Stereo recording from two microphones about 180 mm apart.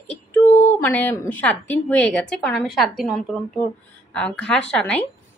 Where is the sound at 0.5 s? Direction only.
40° left (ahead or behind).